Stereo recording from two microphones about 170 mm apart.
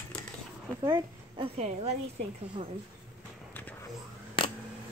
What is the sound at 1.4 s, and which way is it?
Speech, 40° right (ahead or behind).